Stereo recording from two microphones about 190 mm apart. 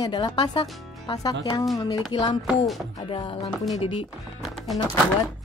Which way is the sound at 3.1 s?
25° left (ahead or behind).